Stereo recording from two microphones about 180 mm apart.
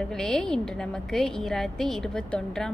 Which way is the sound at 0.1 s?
Centre (ahead or behind).